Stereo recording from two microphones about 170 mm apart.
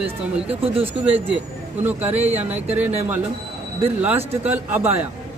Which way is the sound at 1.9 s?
10° right (ahead or behind).